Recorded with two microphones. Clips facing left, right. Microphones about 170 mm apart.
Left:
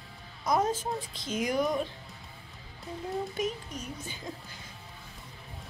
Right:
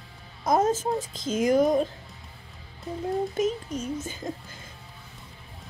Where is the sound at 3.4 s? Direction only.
20° right (ahead or behind).